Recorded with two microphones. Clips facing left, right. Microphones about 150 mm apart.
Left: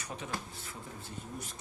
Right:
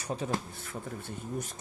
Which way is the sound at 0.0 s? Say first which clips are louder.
Right 8 dB; 35° right (ahead or behind).